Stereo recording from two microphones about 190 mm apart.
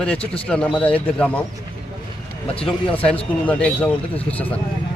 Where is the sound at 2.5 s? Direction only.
30° left (ahead or behind).